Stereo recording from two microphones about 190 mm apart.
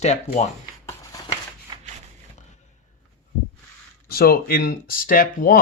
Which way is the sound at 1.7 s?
25° right (ahead or behind).